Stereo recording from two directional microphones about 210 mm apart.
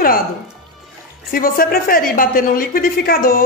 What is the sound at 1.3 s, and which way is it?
A woman's voice, 45° left (ahead or behind).